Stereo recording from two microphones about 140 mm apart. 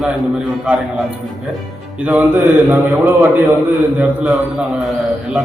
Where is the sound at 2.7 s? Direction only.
15° right (ahead or behind).